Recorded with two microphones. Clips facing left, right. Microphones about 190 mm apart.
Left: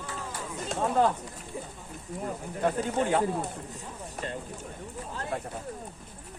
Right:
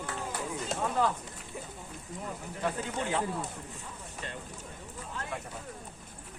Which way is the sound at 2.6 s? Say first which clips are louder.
Left 6 dB; 40° left (ahead or behind).